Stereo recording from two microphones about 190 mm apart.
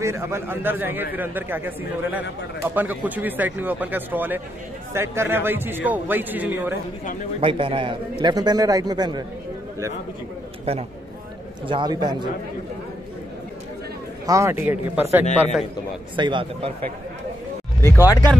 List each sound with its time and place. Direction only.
0.0 s speech: 15° right (ahead or behind)
7.3 s a man's voice: 30° right (ahead or behind)
10.6 s a man's voice: 30° right (ahead or behind)
14.2 s speech: 15° right (ahead or behind)
16.2 s a man's voice: 25° right (ahead or behind)
17.8 s speech: 15° left (ahead or behind)